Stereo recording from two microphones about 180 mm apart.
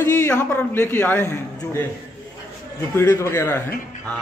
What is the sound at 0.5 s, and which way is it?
A man's voice, 10° left (ahead or behind).